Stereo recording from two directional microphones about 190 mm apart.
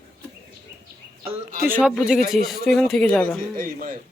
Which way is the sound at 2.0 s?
Centre (ahead or behind).